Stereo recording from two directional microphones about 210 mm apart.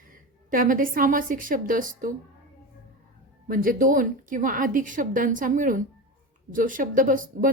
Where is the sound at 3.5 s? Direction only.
40° right (ahead or behind).